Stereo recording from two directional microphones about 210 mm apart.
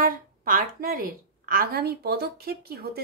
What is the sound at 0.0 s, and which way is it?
A woman's voice, 40° right (ahead or behind).